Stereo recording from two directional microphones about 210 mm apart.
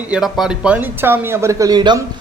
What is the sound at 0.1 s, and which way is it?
Speech, centre (ahead or behind).